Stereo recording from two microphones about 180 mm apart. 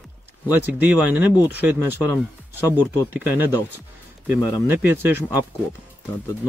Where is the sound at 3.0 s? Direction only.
10° right (ahead or behind).